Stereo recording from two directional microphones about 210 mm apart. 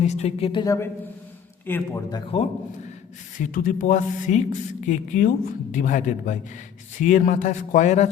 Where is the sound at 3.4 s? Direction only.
40° left (ahead or behind).